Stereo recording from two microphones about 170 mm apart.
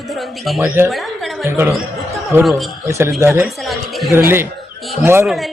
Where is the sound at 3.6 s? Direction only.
Centre (ahead or behind).